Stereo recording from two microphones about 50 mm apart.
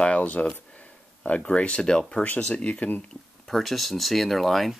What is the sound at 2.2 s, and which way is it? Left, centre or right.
Speech, left.